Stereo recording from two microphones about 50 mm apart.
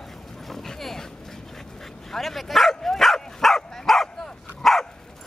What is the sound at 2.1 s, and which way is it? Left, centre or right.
Dog, centre.